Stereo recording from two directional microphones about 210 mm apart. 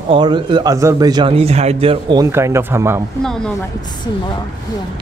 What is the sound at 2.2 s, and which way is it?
Speech, 15° right (ahead or behind).